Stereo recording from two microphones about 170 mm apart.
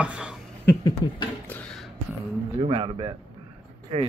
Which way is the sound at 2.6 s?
30° right (ahead or behind).